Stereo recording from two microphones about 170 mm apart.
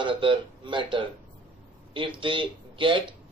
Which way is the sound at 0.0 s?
30° right (ahead or behind).